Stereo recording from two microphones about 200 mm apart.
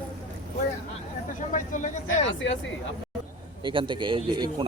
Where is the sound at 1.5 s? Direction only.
40° left (ahead or behind).